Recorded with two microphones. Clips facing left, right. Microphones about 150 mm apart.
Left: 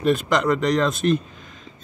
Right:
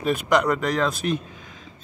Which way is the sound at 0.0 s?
10° right (ahead or behind).